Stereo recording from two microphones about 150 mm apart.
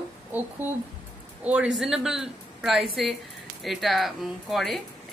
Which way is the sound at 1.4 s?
5° right (ahead or behind).